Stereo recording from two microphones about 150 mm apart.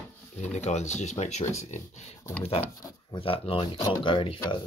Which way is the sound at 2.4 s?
40° left (ahead or behind).